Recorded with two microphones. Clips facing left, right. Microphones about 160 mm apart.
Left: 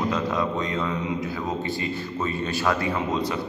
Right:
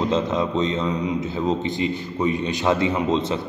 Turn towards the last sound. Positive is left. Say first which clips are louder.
# right 4 dB
turn(degrees=-20)  # may be behind; listen again after turning